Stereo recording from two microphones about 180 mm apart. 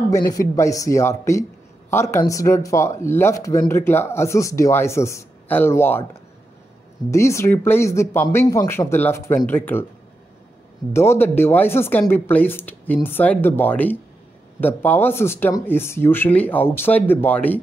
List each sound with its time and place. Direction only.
0.1 s speech: 15° left (ahead or behind)
7.1 s speech: 15° left (ahead or behind)
10.9 s speech: 15° left (ahead or behind)